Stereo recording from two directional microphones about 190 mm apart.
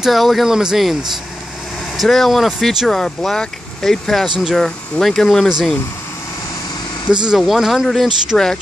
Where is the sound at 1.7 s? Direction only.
Centre (ahead or behind).